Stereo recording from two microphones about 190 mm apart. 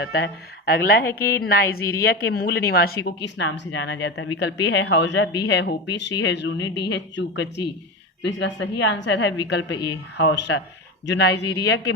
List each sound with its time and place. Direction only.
0.0 s a woman's voice: 65° left (ahead or behind)
0.7 s a woman's voice: 55° left (ahead or behind)